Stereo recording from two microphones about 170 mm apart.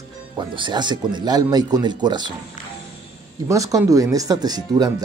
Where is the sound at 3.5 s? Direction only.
20° right (ahead or behind).